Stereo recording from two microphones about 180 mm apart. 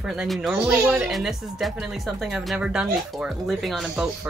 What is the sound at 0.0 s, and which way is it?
Speech, 5° right (ahead or behind).